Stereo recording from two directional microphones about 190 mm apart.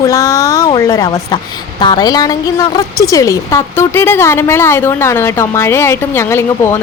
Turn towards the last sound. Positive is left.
turn(degrees=15)  # may be behind; listen again after turning